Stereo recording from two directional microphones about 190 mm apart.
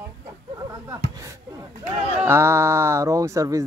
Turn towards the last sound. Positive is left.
turn(degrees=-15)  # may be behind; listen again after turning